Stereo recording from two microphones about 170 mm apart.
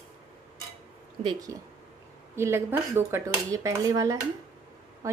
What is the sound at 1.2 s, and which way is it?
Speech, 20° right (ahead or behind).